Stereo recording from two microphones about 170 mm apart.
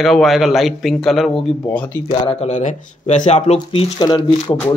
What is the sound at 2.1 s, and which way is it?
Speech, 30° left (ahead or behind).